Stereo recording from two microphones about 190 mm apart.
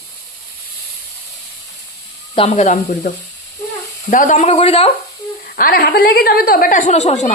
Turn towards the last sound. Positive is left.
turn(degrees=35)  # may be behind; listen again after turning